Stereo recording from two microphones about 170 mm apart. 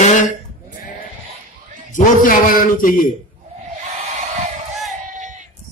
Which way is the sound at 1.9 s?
55° left (ahead or behind).